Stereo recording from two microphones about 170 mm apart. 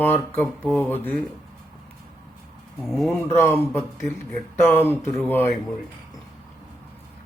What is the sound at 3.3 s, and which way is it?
Speech, 15° left (ahead or behind).